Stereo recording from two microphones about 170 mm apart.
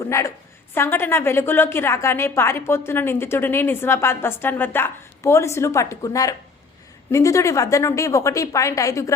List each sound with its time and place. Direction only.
0.1 s a woman's voice: 15° left (ahead or behind)